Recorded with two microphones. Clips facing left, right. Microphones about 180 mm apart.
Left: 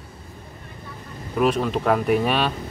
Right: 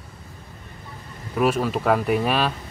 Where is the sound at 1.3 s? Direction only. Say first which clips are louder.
Left 1 dB; 5° right (ahead or behind).